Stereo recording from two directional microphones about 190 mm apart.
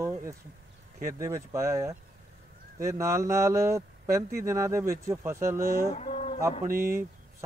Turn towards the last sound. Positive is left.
turn(degrees=-15)  # may be behind; listen again after turning